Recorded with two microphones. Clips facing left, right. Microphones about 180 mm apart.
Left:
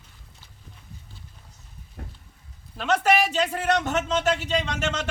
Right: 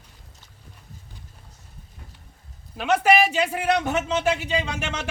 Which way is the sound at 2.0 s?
65° left (ahead or behind).